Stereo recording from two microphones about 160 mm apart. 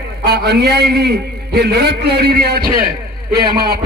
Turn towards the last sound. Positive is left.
turn(degrees=-70)  # may be behind; listen again after turning